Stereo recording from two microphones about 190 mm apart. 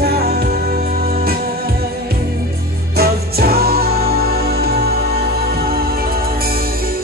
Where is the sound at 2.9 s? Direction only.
55° right (ahead or behind).